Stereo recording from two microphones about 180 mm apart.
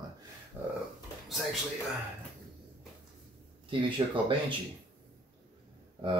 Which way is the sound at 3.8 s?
25° right (ahead or behind).